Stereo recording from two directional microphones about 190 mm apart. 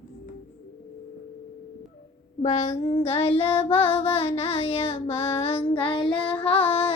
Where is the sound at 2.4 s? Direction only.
35° left (ahead or behind).